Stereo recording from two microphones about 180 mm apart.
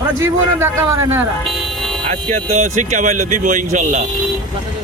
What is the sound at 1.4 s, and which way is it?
Music, centre (ahead or behind).